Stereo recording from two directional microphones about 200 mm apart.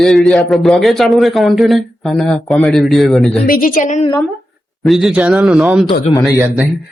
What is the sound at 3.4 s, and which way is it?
Speech, 45° left (ahead or behind).